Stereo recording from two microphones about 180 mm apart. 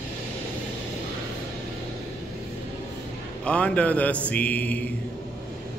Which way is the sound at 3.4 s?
5° left (ahead or behind).